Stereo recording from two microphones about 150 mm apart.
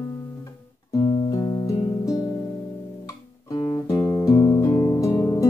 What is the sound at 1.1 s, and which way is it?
Music, 30° left (ahead or behind).